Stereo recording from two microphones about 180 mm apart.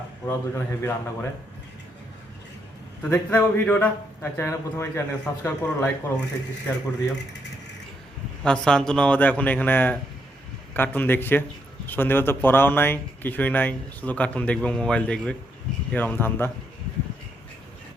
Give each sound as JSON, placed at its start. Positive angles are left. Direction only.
{"t": 0.3, "sound": "speech", "side_deg": 15}
{"t": 3.0, "sound": "speech", "side_deg": 10}
{"t": 8.4, "sound": "speech", "side_deg": 5}